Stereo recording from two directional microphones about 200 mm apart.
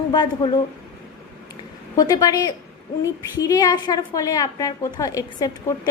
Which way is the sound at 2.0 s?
15° left (ahead or behind).